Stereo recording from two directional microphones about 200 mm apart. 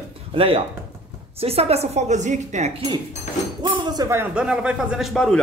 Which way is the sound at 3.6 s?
20° right (ahead or behind).